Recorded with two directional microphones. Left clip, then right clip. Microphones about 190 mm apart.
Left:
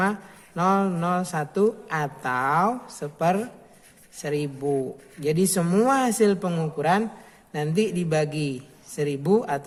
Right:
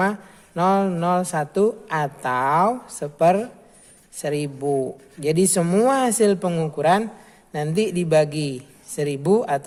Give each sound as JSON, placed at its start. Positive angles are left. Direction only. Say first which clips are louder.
{"t": 0.0, "sound": "a man's voice", "louder": "right 3 dB", "side_deg": -25}